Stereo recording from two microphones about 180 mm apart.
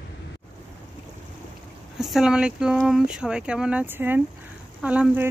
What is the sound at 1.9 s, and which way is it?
Speech, centre (ahead or behind).